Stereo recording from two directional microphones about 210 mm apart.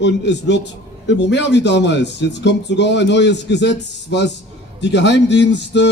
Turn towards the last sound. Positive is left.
turn(degrees=55)  # may be behind; listen again after turning